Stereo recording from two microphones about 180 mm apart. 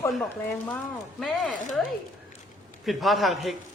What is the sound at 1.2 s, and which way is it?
Speech, centre (ahead or behind).